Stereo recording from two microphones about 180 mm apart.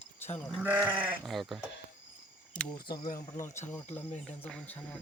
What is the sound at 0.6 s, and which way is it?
Goat, 10° right (ahead or behind).